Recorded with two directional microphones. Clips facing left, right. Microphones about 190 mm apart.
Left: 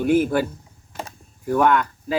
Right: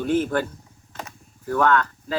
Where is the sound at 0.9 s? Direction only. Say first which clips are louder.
Left 3 dB; 10° left (ahead or behind).